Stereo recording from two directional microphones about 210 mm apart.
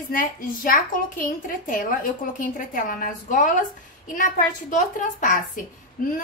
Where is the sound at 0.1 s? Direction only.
40° left (ahead or behind).